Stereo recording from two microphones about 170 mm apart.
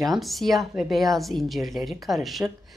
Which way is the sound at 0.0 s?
Centre (ahead or behind).